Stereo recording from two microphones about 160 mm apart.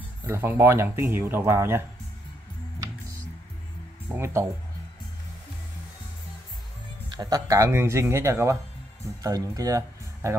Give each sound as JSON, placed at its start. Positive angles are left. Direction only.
{"t": 0.2, "sound": "speech", "side_deg": -15}
{"t": 4.1, "sound": "speech", "side_deg": -15}
{"t": 7.1, "sound": "speech", "side_deg": -25}